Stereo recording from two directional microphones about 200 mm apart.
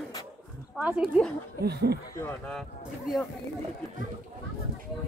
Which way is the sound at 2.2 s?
10° left (ahead or behind).